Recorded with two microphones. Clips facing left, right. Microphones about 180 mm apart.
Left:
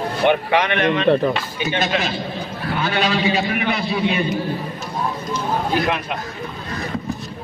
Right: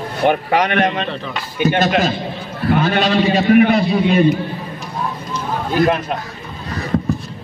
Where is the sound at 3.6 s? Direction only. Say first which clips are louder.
Right 6 dB; 45° right (ahead or behind).